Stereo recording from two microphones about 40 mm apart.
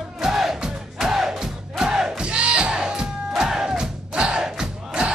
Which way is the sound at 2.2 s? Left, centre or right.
Right.